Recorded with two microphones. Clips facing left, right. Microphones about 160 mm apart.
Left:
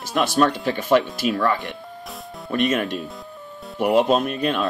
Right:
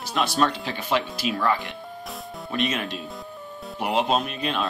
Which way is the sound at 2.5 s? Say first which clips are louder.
Left 6 dB; 50° left (ahead or behind).